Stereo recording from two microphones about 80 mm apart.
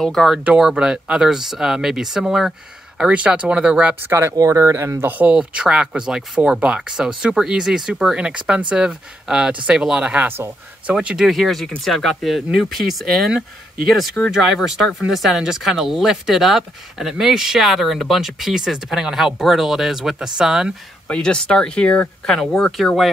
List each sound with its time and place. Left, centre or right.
0.0 s speech: centre
0.4 s speech: centre
4.1 s speech: right
5.1 s speech: centre
11.0 s speech: centre
11.2 s speech: centre
14.3 s speech: centre
21.1 s speech: centre